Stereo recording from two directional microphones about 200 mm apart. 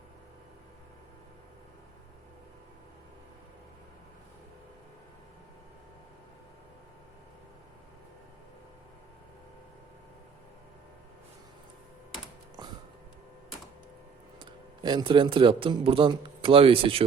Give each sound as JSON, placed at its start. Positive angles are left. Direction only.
{"t": 14.3, "sound": "a man's voice", "side_deg": -25}